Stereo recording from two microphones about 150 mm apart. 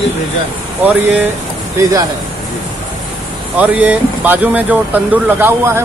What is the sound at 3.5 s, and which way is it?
Speech, 10° right (ahead or behind).